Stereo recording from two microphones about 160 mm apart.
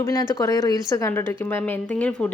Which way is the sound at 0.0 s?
20° left (ahead or behind).